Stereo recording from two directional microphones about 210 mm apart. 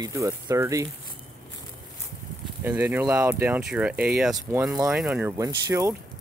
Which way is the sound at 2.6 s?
10° right (ahead or behind).